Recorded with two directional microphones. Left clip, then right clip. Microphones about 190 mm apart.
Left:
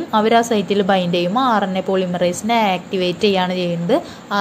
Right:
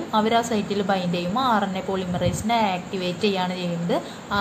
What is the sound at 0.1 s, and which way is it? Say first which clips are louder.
A woman's voice: left 6 dB; 35° left (ahead or behind).